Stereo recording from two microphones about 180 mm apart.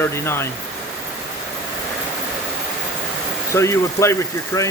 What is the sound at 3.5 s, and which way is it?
Speech, 15° left (ahead or behind).